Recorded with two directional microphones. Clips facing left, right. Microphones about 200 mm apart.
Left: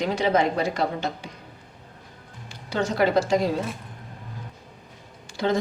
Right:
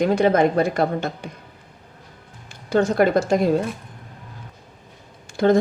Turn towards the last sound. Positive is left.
turn(degrees=-50)  # may be behind; listen again after turning